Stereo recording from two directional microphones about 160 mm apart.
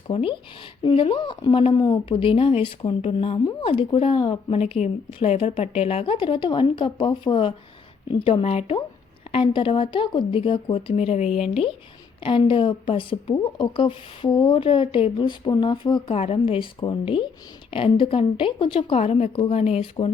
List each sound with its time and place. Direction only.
0.1 s speech: 35° left (ahead or behind)